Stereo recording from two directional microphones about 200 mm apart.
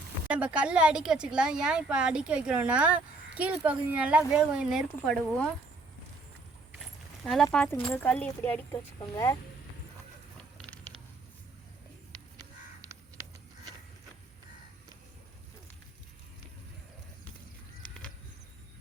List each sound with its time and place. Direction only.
0.3 s speech: 5° right (ahead or behind)
7.5 s speech: 5° left (ahead or behind)
10.3 s mechanisms: centre (ahead or behind)